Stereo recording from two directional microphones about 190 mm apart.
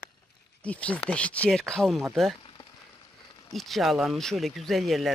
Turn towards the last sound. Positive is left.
turn(degrees=0)  # may be behind; listen again after turning